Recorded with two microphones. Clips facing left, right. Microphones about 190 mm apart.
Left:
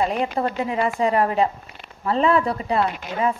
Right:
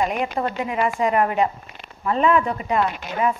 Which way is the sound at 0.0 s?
35° left (ahead or behind).